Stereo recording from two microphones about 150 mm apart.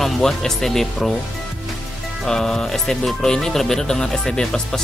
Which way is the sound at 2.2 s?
5° left (ahead or behind).